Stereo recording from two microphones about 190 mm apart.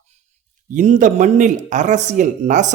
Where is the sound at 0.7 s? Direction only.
40° right (ahead or behind).